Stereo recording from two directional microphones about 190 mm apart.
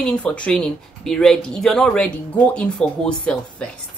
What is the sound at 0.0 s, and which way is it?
Speech, 5° left (ahead or behind).